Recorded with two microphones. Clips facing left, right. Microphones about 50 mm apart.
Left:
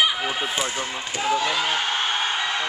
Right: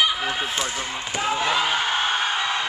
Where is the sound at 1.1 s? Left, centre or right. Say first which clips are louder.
Even; centre.